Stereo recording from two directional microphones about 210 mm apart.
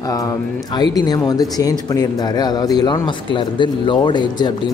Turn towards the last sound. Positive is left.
turn(degrees=20)  # may be behind; listen again after turning